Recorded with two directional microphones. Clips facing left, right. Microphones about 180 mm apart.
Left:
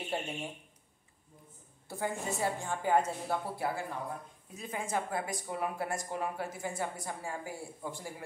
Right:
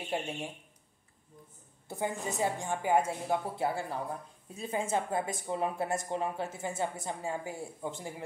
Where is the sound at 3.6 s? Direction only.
25° right (ahead or behind).